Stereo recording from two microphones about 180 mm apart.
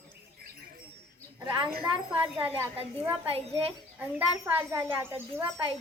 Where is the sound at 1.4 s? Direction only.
10° right (ahead or behind).